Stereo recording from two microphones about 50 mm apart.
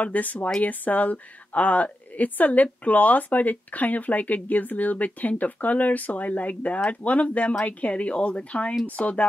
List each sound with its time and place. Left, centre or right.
0.0 s a woman's voice: left